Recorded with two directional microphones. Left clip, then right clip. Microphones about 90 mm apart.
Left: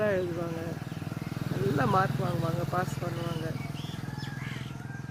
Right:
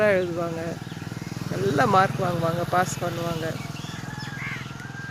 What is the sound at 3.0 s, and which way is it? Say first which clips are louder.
Speech: right 7 dB; 50° right (ahead or behind).